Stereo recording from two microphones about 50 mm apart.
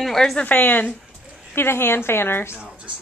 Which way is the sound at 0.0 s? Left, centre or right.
Centre.